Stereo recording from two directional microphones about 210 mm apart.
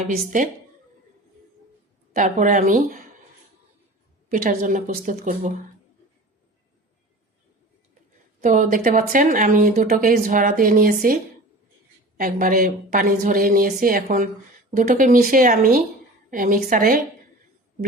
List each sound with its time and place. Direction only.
0.1 s speech: 40° right (ahead or behind)
2.1 s speech: 40° right (ahead or behind)
4.3 s speech: 40° right (ahead or behind)
8.4 s speech: 40° right (ahead or behind)